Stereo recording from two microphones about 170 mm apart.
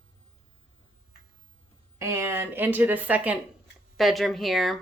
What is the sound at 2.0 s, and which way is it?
Speech, 15° right (ahead or behind).